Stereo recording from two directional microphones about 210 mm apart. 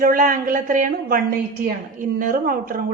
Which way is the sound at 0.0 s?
40° right (ahead or behind).